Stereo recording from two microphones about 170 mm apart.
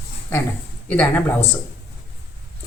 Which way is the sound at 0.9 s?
10° left (ahead or behind).